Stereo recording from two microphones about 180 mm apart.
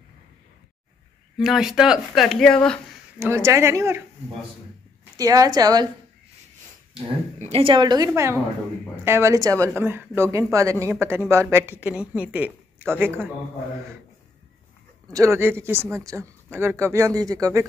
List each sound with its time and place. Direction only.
1.4 s speech: centre (ahead or behind)
3.2 s speech: 15° right (ahead or behind)
5.1 s a woman's voice: 20° right (ahead or behind)
7.3 s a woman's voice: 35° right (ahead or behind); by 13.3 s 10° right (ahead or behind)
15.1 s speech: 15° right (ahead or behind)